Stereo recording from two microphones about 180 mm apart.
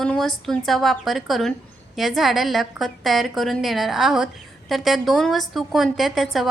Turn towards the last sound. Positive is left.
turn(degrees=0)  # may be behind; listen again after turning